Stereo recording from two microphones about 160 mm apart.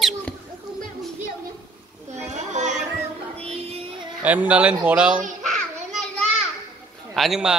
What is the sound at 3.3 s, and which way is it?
Music, 40° right (ahead or behind).